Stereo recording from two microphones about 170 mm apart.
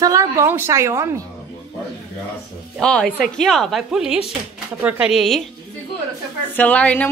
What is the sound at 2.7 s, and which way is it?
A woman's voice, 5° left (ahead or behind).